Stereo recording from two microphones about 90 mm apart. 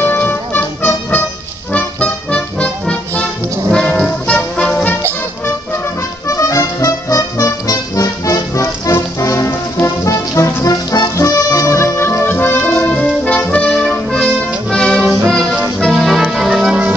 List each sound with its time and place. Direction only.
0.0 s music: 20° left (ahead or behind)
3.7 s brass instrument: 10° left (ahead or behind)
6.2 s music: 35° left (ahead or behind)
12.8 s brass instrument: 15° left (ahead or behind)
15.8 s organ: centre (ahead or behind)